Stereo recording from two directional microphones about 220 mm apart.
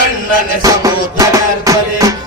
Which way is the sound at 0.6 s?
15° right (ahead or behind).